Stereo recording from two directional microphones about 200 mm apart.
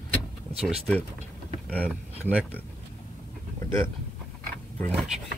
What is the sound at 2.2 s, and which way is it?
Speech, 5° right (ahead or behind).